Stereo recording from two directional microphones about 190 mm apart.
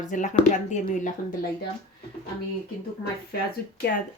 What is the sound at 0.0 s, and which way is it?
Speech, 40° left (ahead or behind).